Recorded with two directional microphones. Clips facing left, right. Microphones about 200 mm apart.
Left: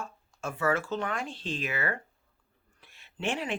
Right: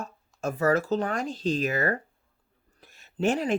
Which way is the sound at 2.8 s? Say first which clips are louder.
Right 11 dB; 40° right (ahead or behind).